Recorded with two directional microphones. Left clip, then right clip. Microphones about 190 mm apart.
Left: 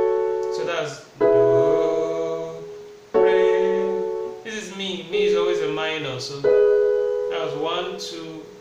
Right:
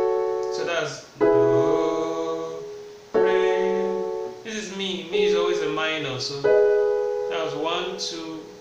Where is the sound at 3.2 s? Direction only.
5° left (ahead or behind).